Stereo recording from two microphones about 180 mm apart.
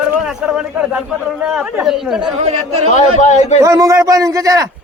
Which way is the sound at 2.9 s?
40° left (ahead or behind).